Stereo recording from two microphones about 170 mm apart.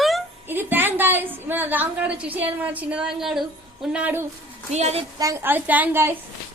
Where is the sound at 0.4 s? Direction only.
10° right (ahead or behind).